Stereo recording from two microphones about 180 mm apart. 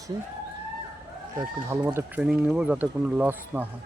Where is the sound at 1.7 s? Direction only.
15° right (ahead or behind).